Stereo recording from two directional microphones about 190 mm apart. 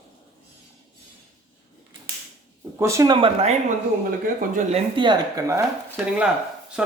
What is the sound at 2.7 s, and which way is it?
Speech, 15° right (ahead or behind).